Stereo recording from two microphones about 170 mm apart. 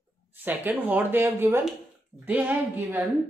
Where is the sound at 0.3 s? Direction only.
10° right (ahead or behind).